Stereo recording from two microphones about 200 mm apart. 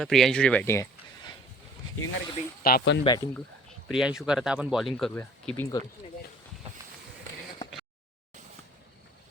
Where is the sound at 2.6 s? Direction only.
55° left (ahead or behind).